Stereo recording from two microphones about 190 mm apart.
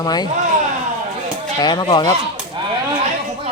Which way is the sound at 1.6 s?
20° left (ahead or behind).